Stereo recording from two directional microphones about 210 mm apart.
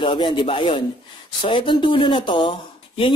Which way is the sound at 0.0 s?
25° left (ahead or behind).